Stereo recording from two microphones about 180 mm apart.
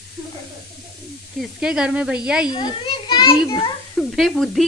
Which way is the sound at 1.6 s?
5° right (ahead or behind).